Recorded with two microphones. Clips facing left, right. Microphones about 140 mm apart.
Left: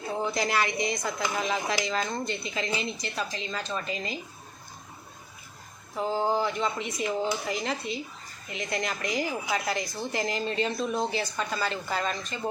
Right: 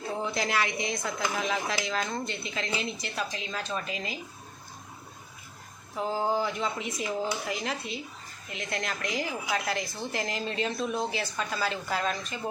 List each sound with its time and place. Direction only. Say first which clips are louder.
0.2 s speech: left 2 dB; centre (ahead or behind)
5.9 s speech: left 2 dB; centre (ahead or behind)